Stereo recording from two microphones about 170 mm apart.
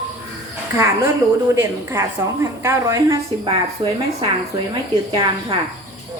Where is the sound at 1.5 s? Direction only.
15° right (ahead or behind).